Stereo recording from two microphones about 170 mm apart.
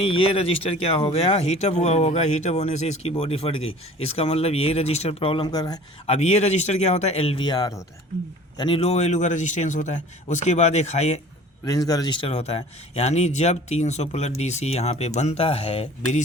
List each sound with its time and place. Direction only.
0.0 s speech: 30° left (ahead or behind)
6.1 s speech: 40° left (ahead or behind); by 7.9 s 20° left (ahead or behind)
8.5 s a man's voice: 30° left (ahead or behind)
11.6 s speech: 20° left (ahead or behind)
12.3 s speech: 35° left (ahead or behind)